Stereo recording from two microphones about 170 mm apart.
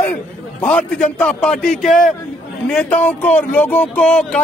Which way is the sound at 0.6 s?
5° left (ahead or behind).